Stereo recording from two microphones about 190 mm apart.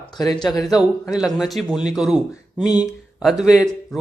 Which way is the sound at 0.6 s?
Centre (ahead or behind).